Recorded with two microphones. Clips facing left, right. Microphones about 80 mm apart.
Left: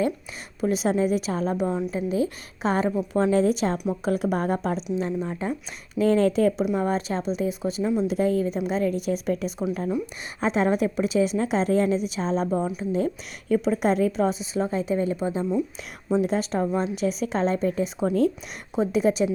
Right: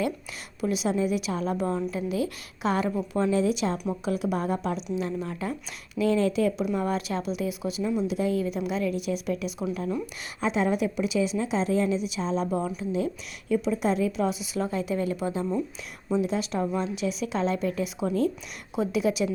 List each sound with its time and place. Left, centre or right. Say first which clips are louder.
0.6 s a woman's voice: left 3 dB; left
1.5 s a woman's voice: left 2 dB; centre
1.9 s a woman's voice: left 3 dB; left
6.0 s a woman's voice: left 4 dB; left
6.7 s a woman's voice: left 3 dB; left
8.0 s a woman's voice: left 3 dB; left
13.5 s a woman's voice: left 3 dB; left
16.2 s a woman's voice: left 3 dB; left